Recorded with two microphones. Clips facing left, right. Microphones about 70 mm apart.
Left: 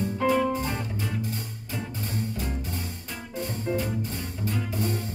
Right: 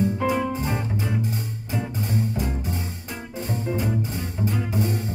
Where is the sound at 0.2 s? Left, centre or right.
Centre.